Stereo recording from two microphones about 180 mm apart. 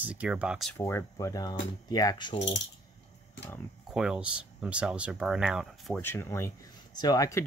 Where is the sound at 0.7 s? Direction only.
15° left (ahead or behind).